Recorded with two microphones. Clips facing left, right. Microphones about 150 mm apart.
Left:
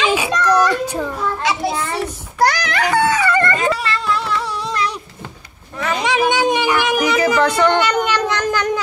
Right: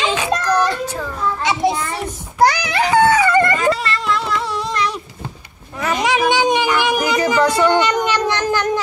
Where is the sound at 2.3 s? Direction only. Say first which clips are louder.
Right 2 dB; 10° right (ahead or behind).